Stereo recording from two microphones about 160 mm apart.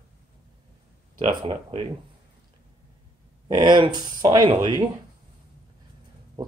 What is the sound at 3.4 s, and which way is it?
Speech, 30° right (ahead or behind).